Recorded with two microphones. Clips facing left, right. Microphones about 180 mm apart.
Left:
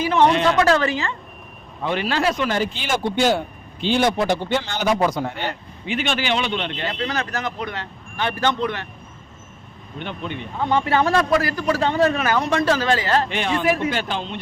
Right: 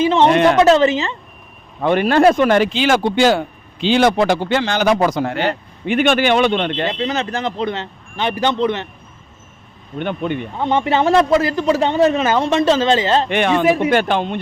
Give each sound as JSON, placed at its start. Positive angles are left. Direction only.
{"t": 0.0, "sound": "a woman's voice", "side_deg": -25}
{"t": 0.3, "sound": "speech", "side_deg": -60}
{"t": 0.6, "sound": "a man's voice", "side_deg": -20}
{"t": 1.8, "sound": "speech", "side_deg": -55}
{"t": 5.8, "sound": "speech", "side_deg": -55}
{"t": 7.0, "sound": "a man's voice", "side_deg": -25}
{"t": 10.0, "sound": "speech", "side_deg": -55}
{"t": 10.6, "sound": "a man's voice", "side_deg": -20}
{"t": 13.3, "sound": "speech", "side_deg": -65}
{"t": 13.7, "sound": "a man's voice", "side_deg": -20}
{"t": 13.9, "sound": "speech", "side_deg": -60}